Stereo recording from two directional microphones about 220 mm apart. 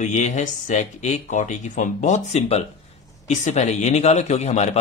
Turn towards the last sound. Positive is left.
turn(degrees=30)  # may be behind; listen again after turning